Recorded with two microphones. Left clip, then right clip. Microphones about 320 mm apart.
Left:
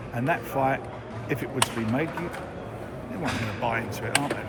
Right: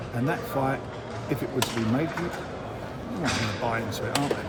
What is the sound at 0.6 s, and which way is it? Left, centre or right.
Speech, centre.